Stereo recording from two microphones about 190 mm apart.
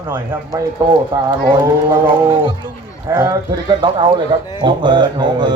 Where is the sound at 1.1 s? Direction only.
20° right (ahead or behind).